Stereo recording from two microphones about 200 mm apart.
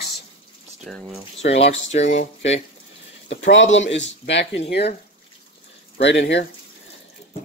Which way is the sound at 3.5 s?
65° left (ahead or behind).